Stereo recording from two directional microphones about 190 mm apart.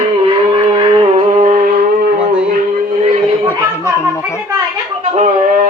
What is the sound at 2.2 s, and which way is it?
Music, 5° right (ahead or behind).